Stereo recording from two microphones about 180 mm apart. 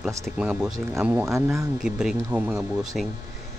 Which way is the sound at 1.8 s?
5° right (ahead or behind).